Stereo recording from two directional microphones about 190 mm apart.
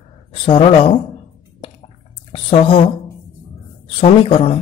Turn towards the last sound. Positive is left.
turn(degrees=30)  # may be behind; listen again after turning